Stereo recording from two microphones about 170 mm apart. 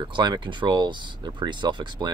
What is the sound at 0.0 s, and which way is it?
Speech, 25° right (ahead or behind).